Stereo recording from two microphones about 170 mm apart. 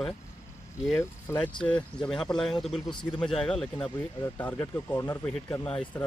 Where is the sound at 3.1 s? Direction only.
5° left (ahead or behind).